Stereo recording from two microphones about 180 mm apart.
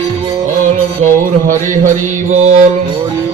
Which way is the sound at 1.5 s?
45° right (ahead or behind).